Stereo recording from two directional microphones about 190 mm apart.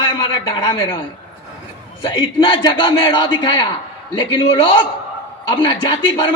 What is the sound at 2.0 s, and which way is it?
A man's voice, 25° left (ahead or behind).